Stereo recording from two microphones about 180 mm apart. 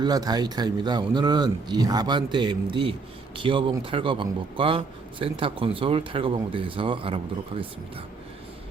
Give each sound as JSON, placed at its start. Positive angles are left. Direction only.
{"t": 0.0, "sound": "a man's voice", "side_deg": -20}